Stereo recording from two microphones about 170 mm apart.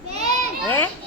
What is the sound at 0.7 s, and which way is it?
Speech, 10° left (ahead or behind).